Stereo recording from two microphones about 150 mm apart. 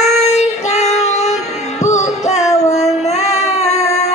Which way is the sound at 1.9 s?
50° left (ahead or behind).